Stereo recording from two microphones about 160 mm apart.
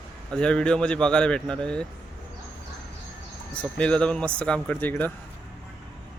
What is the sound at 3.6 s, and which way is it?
Speech, 5° left (ahead or behind).